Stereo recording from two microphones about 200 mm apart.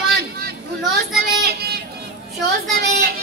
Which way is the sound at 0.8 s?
Centre (ahead or behind).